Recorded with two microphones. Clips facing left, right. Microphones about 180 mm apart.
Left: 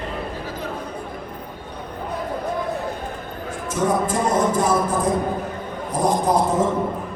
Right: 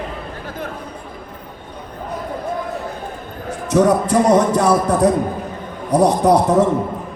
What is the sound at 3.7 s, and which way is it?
Speech, 70° right (ahead or behind).